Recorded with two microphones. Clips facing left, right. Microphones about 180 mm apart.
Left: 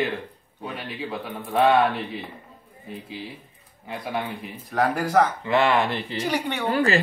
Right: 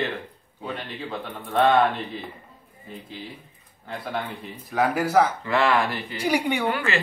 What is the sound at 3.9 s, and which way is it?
Speech, 10° left (ahead or behind).